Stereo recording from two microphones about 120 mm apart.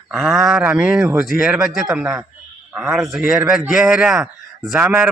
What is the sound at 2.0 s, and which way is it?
A man's voice, 15° right (ahead or behind).